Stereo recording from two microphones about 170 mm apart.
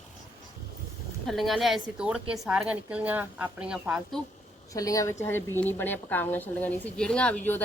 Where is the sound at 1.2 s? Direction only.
Centre (ahead or behind).